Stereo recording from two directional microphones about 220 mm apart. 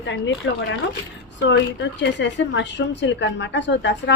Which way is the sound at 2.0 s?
55° left (ahead or behind).